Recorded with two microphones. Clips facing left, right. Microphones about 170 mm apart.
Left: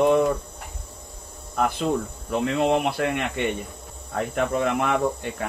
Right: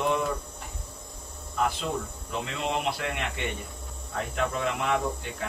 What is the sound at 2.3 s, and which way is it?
Speech, 60° left (ahead or behind).